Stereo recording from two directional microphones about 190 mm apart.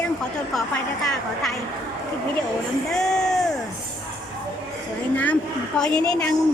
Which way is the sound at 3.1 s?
Centre (ahead or behind).